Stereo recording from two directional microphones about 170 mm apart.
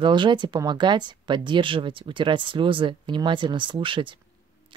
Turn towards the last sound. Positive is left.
turn(degrees=-30)  # may be behind; listen again after turning